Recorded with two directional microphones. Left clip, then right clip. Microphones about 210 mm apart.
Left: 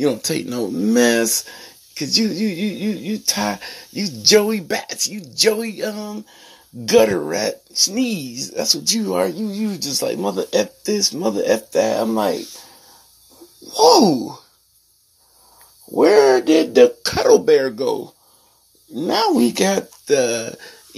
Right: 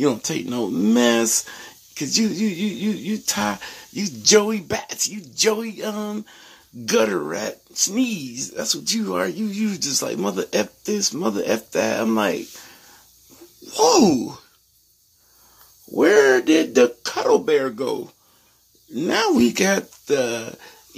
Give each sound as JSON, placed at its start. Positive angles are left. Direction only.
{"t": 0.0, "sound": "speech", "side_deg": -5}
{"t": 0.7, "sound": "speech", "side_deg": -10}
{"t": 0.9, "sound": "speech", "side_deg": 0}
{"t": 5.9, "sound": "speech", "side_deg": -20}
{"t": 6.3, "sound": "speech", "side_deg": 0}
{"t": 9.5, "sound": "speech", "side_deg": -10}
{"t": 13.7, "sound": "speech", "side_deg": -10}
{"t": 15.9, "sound": "speech", "side_deg": -10}